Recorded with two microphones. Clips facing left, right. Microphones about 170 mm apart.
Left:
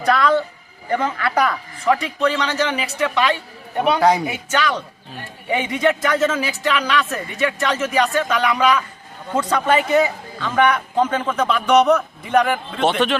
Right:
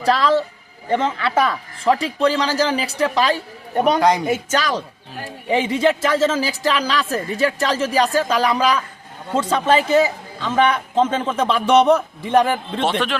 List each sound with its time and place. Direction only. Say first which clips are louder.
0.0 s a sound: even; 30° right (ahead or behind)
0.9 s speech: right 1 dB; 25° right (ahead or behind); by 4.0 s 45° right (ahead or behind)
4.0 s speech: left 1 dB; 5° left (ahead or behind)
4.3 s a man's voice: right 2 dB; 35° right (ahead or behind)